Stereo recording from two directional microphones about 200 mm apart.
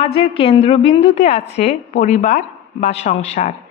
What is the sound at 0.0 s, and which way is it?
A woman's voice, 30° left (ahead or behind).